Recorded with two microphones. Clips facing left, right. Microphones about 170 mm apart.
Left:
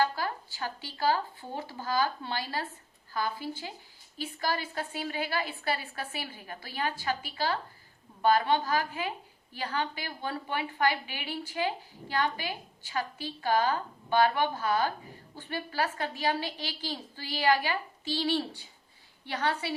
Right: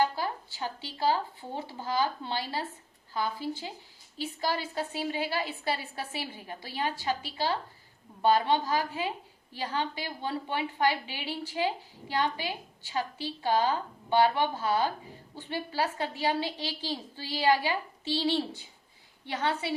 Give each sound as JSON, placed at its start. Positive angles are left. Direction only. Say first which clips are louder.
{"t": 0.0, "sound": "a woman's voice", "louder": "right 1 dB", "side_deg": -20}
{"t": 4.2, "sound": "a woman's voice", "louder": "right 1 dB", "side_deg": -25}